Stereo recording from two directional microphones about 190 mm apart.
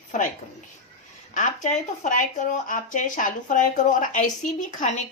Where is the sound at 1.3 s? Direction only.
40° left (ahead or behind).